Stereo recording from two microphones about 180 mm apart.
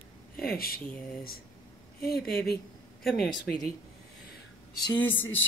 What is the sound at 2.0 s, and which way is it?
Speech, 55° left (ahead or behind).